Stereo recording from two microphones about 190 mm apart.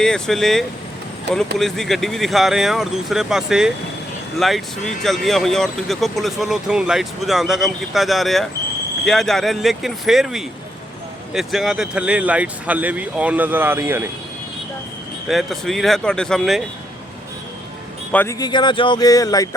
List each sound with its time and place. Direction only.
0.0 s speech: 5° left (ahead or behind)
15.3 s speech: centre (ahead or behind)
18.1 s speech: 10° left (ahead or behind)
18.3 s speech: 25° left (ahead or behind)